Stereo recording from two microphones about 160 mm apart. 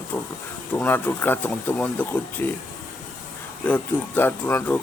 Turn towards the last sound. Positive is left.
turn(degrees=10)  # may be behind; listen again after turning